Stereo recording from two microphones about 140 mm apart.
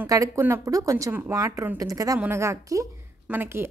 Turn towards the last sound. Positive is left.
turn(degrees=-15)  # may be behind; listen again after turning